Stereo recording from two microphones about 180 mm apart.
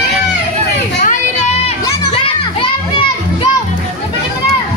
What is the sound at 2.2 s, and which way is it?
Children playing, 30° left (ahead or behind).